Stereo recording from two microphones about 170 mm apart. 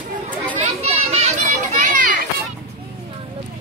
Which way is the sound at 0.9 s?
40° right (ahead or behind).